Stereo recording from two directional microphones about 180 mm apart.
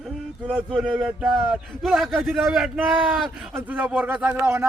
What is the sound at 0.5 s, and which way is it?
A man's voice, 5° right (ahead or behind).